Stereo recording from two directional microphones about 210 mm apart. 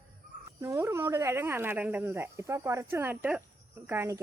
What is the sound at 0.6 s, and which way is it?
Speech, 15° right (ahead or behind).